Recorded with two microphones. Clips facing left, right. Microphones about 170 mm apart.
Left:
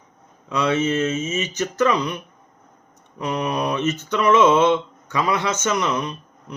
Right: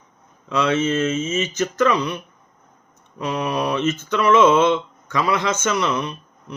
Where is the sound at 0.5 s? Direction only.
15° left (ahead or behind).